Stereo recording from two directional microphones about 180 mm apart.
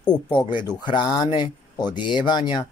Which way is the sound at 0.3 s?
25° left (ahead or behind).